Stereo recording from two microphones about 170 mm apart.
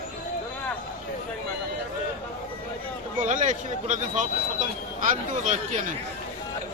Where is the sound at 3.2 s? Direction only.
50° right (ahead or behind).